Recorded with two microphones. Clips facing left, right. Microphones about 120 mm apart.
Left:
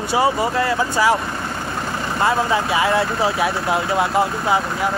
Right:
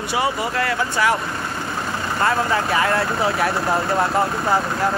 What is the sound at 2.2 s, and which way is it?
Speech, 25° left (ahead or behind).